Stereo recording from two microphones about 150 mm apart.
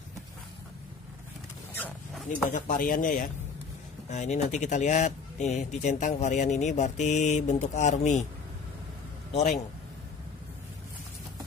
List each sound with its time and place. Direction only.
2.5 s speech: 70° left (ahead or behind)
4.1 s speech: 50° left (ahead or behind)
9.3 s speech: 50° left (ahead or behind)